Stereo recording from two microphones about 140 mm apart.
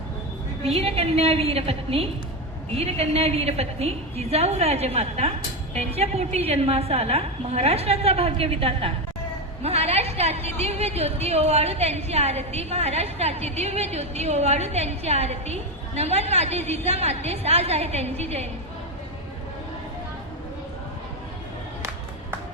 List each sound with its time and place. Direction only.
0.6 s a woman's voice: 45° right (ahead or behind)